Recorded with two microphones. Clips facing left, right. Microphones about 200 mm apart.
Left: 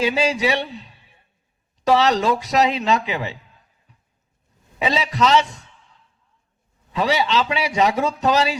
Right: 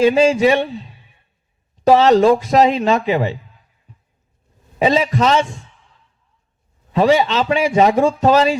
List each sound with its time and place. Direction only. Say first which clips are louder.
0.0 s a man's voice: right 8 dB; 45° right (ahead or behind)
1.9 s a man's voice: right 7 dB; 45° right (ahead or behind)
4.8 s a man's voice: right 5 dB; 45° right (ahead or behind)
6.9 s a man's voice: right 6 dB; 45° right (ahead or behind)